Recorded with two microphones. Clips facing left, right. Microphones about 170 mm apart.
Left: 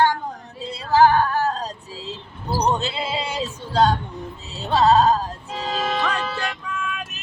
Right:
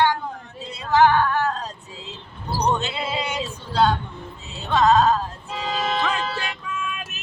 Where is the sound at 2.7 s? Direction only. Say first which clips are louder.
Left 1 dB; 30° left (ahead or behind).